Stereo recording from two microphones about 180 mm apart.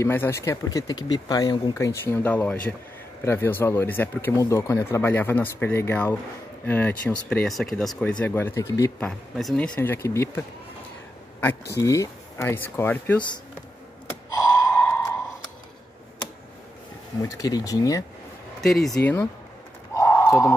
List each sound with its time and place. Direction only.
0.0 s speech: 15° left (ahead or behind)
9.3 s speech: centre (ahead or behind)
9.8 s speech: 15° left (ahead or behind)
11.8 s speech: 15° left (ahead or behind)
14.3 s gasp: 20° left (ahead or behind)
17.2 s speech: 20° left (ahead or behind)
18.6 s speech: centre (ahead or behind)
19.9 s a sound: 15° left (ahead or behind)